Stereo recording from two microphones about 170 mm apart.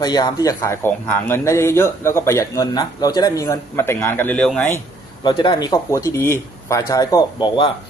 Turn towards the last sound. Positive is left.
turn(degrees=30)  # may be behind; listen again after turning